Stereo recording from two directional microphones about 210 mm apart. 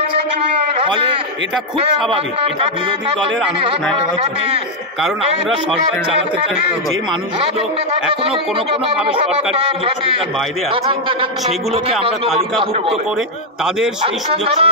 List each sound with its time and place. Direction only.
0.8 s a man's voice: 25° right (ahead or behind)
10.7 s speech: 25° right (ahead or behind)
14.0 s speech: 30° right (ahead or behind)